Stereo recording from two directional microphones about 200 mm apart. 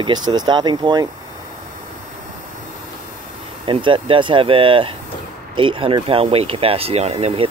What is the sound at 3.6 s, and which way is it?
Speech, 25° right (ahead or behind).